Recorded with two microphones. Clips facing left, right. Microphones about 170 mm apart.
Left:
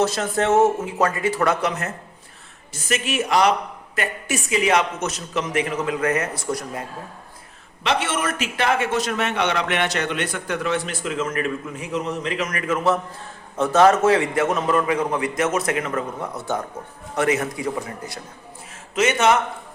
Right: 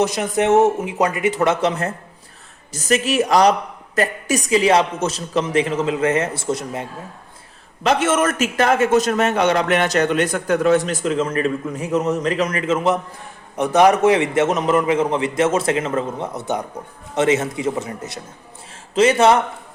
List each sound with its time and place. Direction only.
0.0 s speech: 15° right (ahead or behind)
2.7 s a man's voice: 40° right (ahead or behind); by 6.8 s 25° right (ahead or behind)
7.9 s a man's voice: 45° right (ahead or behind)
12.5 s a man's voice: 25° right (ahead or behind)